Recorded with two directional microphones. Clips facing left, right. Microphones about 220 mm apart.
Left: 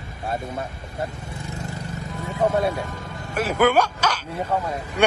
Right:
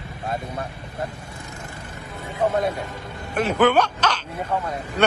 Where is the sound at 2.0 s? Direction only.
45° left (ahead or behind).